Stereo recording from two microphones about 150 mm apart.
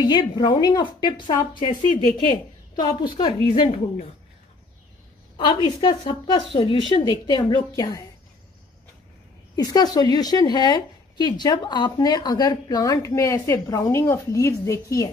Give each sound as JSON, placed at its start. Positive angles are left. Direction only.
{"t": 0.0, "sound": "a woman's voice", "side_deg": 30}
{"t": 5.8, "sound": "speech", "side_deg": 30}
{"t": 9.6, "sound": "speech", "side_deg": 25}